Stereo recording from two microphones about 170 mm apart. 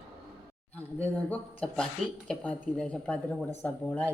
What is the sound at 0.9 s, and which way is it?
Speech, 10° left (ahead or behind).